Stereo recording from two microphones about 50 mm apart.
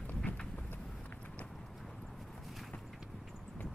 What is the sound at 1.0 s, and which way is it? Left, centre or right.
Horse, left.